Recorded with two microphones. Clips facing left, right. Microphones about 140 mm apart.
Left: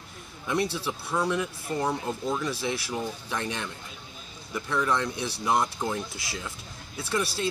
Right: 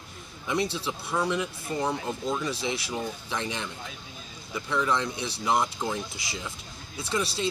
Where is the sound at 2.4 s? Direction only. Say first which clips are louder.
Even; 20° right (ahead or behind).